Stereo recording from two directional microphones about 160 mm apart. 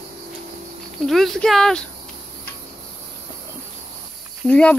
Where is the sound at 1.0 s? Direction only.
Centre (ahead or behind).